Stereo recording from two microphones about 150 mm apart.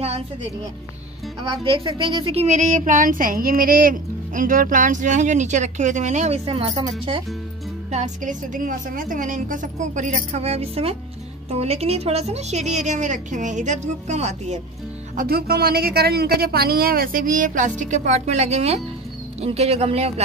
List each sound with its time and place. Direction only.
1.6 s a woman's voice: 35° right (ahead or behind)
2.4 s a woman's voice: 55° right (ahead or behind); by 7.2 s 35° right (ahead or behind)
7.9 s a woman's voice: 55° right (ahead or behind)
15.1 s a woman's voice: 90° right; by 20.2 s 45° right (ahead or behind)